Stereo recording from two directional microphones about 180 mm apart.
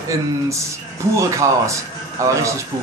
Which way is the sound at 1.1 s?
15° right (ahead or behind).